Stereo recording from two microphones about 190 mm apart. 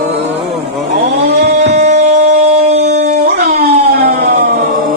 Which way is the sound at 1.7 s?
40° right (ahead or behind).